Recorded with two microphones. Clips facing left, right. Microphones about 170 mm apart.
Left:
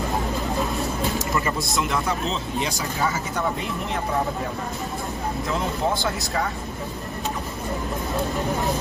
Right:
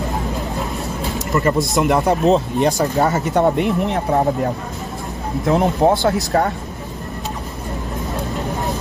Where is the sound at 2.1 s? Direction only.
55° right (ahead or behind).